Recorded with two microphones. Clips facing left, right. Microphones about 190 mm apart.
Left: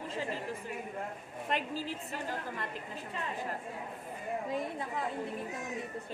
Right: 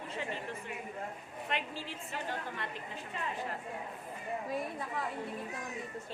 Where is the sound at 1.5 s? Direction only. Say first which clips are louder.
Left 4 dB; 40° left (ahead or behind).